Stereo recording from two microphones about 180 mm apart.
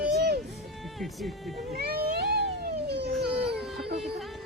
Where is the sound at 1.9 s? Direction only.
65° right (ahead or behind).